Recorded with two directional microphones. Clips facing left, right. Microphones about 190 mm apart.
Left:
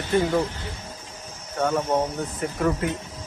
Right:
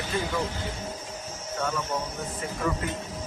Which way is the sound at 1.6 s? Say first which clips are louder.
Left 7 dB; 60° left (ahead or behind).